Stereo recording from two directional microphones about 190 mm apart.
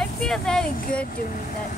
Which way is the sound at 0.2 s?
5° left (ahead or behind).